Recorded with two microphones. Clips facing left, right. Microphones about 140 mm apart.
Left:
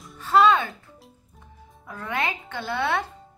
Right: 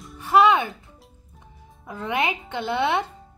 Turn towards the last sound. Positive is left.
turn(degrees=-20)  # may be behind; listen again after turning